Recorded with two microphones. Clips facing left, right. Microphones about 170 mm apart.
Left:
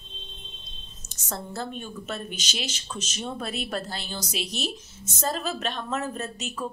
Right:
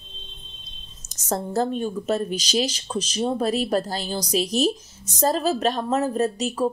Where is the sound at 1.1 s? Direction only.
40° right (ahead or behind).